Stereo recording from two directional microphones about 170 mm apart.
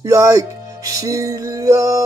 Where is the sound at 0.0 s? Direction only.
20° right (ahead or behind).